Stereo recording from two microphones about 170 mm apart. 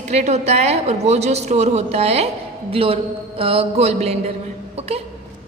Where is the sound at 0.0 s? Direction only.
40° right (ahead or behind).